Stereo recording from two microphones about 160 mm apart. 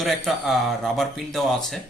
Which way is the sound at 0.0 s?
Centre (ahead or behind).